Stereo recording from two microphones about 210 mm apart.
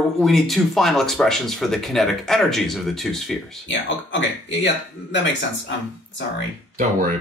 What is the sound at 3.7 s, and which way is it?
Speech, 60° left (ahead or behind).